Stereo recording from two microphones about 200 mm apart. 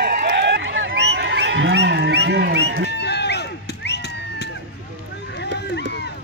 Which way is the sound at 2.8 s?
55° left (ahead or behind).